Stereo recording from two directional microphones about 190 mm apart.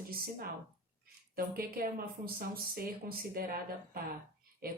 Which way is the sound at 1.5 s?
55° right (ahead or behind).